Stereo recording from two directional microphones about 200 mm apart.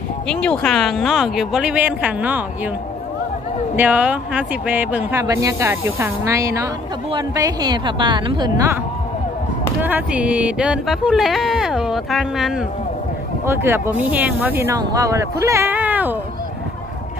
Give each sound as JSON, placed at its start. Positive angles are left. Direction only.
{"t": 0.3, "sound": "speech", "side_deg": 5}
{"t": 3.7, "sound": "a woman's voice", "side_deg": -10}
{"t": 9.8, "sound": "speech", "side_deg": -10}
{"t": 13.5, "sound": "speech", "side_deg": -10}